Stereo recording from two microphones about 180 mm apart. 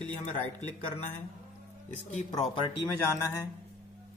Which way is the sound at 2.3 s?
25° left (ahead or behind).